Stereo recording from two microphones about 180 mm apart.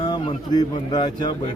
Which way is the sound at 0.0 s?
25° left (ahead or behind).